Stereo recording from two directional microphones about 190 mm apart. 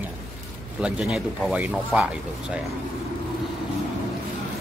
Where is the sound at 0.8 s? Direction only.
5° right (ahead or behind).